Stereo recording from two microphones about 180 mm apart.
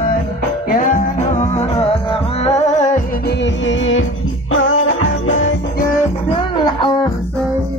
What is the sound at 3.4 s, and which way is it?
Music, 90° left.